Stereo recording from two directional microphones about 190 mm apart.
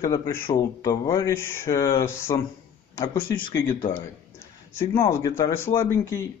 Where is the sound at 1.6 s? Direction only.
25° left (ahead or behind); by 3.8 s 10° left (ahead or behind).